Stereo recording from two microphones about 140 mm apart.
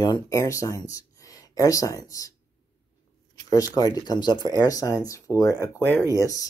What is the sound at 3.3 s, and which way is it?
Speech, 25° left (ahead or behind).